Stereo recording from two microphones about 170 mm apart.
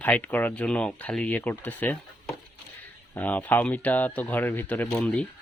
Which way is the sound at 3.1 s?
10° left (ahead or behind).